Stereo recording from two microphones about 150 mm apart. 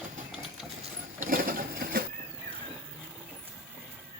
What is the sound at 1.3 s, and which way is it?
Sewing machine, 75° right (ahead or behind).